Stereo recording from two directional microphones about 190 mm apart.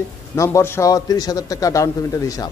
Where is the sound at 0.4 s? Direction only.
15° left (ahead or behind).